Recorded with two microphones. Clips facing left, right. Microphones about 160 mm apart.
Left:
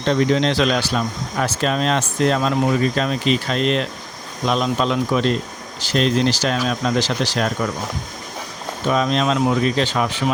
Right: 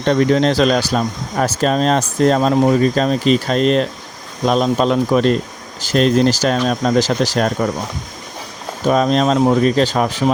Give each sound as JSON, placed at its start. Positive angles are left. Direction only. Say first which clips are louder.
{"t": 0.0, "sound": "speech", "louder": "right 4 dB", "side_deg": -50}
{"t": 8.9, "sound": "speech", "louder": "right 5 dB", "side_deg": -40}